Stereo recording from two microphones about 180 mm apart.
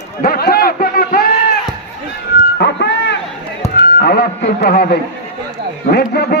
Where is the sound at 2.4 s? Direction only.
70° left (ahead or behind).